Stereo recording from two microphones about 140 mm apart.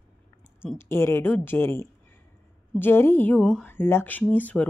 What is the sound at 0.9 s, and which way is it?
Speech, 15° left (ahead or behind).